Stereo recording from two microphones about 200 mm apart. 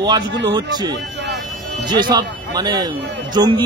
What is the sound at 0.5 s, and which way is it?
A man's voice, 20° right (ahead or behind).